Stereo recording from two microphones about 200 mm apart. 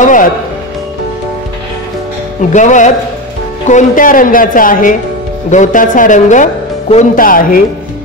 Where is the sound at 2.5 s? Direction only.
40° left (ahead or behind).